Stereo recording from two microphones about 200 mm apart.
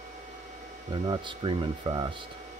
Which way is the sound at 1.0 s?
20° right (ahead or behind).